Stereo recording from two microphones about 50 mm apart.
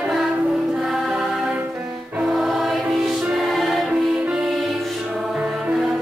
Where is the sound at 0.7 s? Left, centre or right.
Centre.